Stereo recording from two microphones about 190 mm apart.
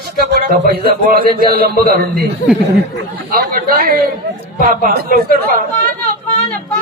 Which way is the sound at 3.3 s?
50° right (ahead or behind).